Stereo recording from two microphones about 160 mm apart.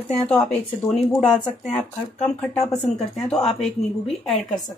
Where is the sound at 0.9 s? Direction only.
5° left (ahead or behind).